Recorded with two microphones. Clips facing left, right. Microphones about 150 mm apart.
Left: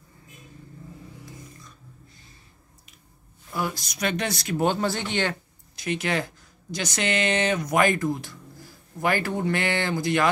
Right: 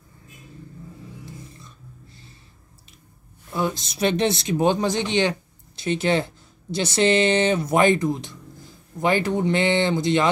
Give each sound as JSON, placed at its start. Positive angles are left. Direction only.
{"t": 3.5, "sound": "speech", "side_deg": -25}
{"t": 5.8, "sound": "speech", "side_deg": -30}